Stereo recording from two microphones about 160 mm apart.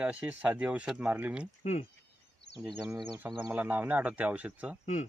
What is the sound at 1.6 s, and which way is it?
Speech, 45° left (ahead or behind).